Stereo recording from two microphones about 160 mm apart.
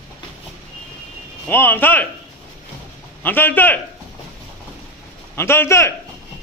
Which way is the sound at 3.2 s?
10° left (ahead or behind).